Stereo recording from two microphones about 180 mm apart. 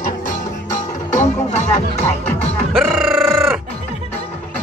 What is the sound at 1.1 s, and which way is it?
Music, 40° left (ahead or behind).